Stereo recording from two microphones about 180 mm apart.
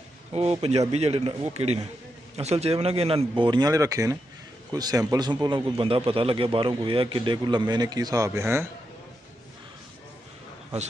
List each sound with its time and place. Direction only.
0.3 s a man's voice: 35° right (ahead or behind); by 8.6 s 15° right (ahead or behind)